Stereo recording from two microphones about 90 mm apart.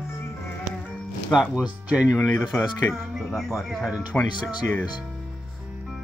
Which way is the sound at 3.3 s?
5° left (ahead or behind).